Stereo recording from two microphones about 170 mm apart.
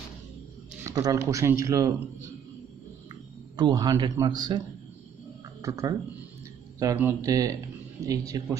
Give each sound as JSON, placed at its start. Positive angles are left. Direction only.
{"t": 0.8, "sound": "a man's voice", "side_deg": -20}
{"t": 3.5, "sound": "a man's voice", "side_deg": -25}